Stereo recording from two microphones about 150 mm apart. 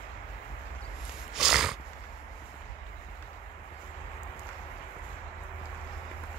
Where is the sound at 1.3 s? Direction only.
5° right (ahead or behind).